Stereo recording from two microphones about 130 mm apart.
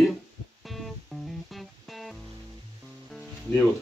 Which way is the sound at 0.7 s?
Centre (ahead or behind).